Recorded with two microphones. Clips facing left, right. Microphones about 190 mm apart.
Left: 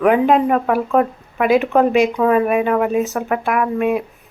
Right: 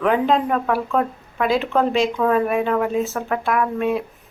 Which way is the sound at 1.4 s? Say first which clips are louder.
Left 5 dB; 15° left (ahead or behind).